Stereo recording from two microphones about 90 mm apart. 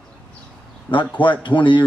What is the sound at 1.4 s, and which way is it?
Speech, 65° left (ahead or behind).